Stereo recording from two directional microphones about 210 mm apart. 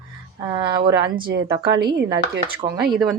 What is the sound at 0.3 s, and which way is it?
Speech, 20° right (ahead or behind).